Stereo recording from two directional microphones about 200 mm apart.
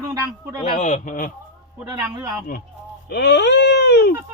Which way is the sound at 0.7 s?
40° left (ahead or behind).